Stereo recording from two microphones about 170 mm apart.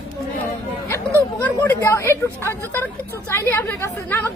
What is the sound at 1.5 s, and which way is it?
Speech, 15° left (ahead or behind).